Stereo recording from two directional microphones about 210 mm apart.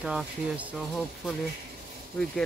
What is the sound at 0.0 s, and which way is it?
Speech, 5° right (ahead or behind).